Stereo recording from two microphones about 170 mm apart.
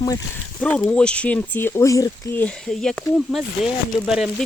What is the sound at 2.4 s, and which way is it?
Speech, 5° left (ahead or behind).